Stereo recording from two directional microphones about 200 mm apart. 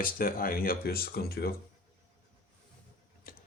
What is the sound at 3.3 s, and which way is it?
Tick-tock, 45° left (ahead or behind).